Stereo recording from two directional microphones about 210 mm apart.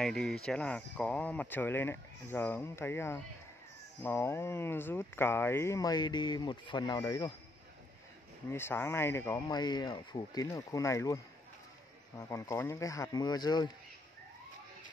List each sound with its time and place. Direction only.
0.0 s speech: centre (ahead or behind); by 7.3 s 20° left (ahead or behind)
8.5 s speech: 10° left (ahead or behind)
12.2 s speech: 15° left (ahead or behind)